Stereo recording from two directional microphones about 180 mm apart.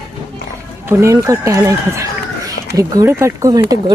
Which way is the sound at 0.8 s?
15° right (ahead or behind).